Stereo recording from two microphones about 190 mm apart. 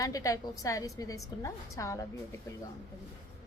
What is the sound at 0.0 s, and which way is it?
A woman's voice, 20° left (ahead or behind).